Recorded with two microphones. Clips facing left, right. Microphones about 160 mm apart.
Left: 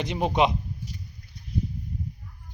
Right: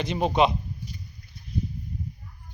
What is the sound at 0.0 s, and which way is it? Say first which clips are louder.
Speech: right 1 dB; 15° left (ahead or behind).